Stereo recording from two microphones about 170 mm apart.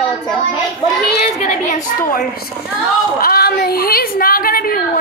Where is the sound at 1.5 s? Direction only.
40° left (ahead or behind).